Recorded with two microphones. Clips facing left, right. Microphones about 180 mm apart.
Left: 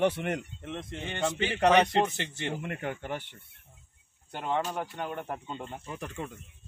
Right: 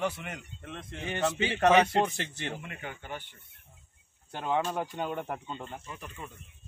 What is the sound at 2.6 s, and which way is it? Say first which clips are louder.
Speech: left 7 dB; 60° left (ahead or behind).